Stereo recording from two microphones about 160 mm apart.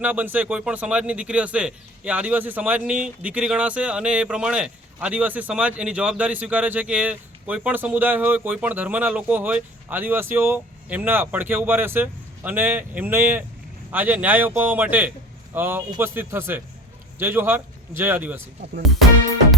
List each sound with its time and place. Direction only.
0.0 s a man's voice: 10° right (ahead or behind)